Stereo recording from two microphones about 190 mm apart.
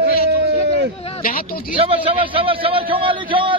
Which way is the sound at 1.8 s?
30° right (ahead or behind).